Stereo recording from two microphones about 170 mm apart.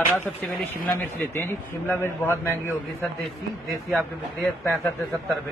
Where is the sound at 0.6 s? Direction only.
10° left (ahead or behind).